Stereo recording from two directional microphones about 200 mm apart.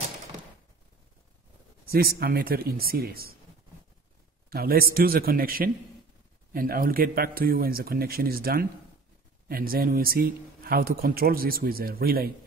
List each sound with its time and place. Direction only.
1.9 s speech: 50° right (ahead or behind)
4.5 s speech: 50° right (ahead or behind)